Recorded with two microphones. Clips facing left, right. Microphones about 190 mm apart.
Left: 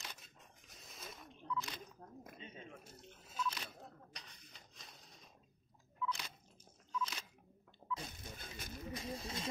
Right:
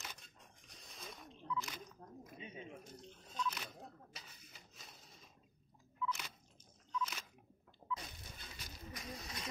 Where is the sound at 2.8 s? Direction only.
5° left (ahead or behind).